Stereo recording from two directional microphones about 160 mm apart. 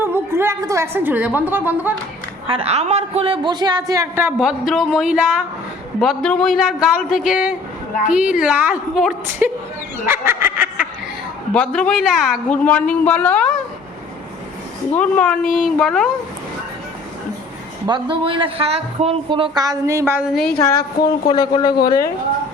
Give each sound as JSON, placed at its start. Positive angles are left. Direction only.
{"t": 0.0, "sound": "a woman's voice", "side_deg": -15}
{"t": 2.5, "sound": "a man's voice", "side_deg": -40}
{"t": 10.1, "sound": "a sound", "side_deg": -15}
{"t": 11.5, "sound": "speech", "side_deg": 10}
{"t": 14.9, "sound": "a man's voice", "side_deg": 10}
{"t": 17.8, "sound": "a woman's voice", "side_deg": -30}
{"t": 20.3, "sound": "a man's voice", "side_deg": 5}
{"t": 21.5, "sound": "speech", "side_deg": 30}